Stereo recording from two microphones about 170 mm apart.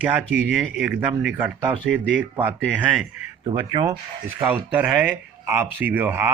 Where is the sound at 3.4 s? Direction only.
25° right (ahead or behind).